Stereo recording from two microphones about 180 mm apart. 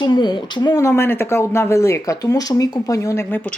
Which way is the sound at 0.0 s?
25° left (ahead or behind).